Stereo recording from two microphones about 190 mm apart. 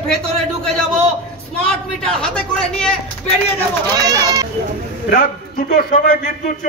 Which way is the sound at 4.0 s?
20° right (ahead or behind).